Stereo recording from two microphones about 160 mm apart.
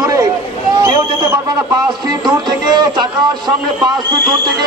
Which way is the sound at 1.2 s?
15° right (ahead or behind).